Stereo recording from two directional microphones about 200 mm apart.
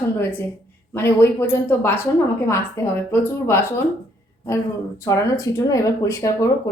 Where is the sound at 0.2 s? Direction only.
10° left (ahead or behind).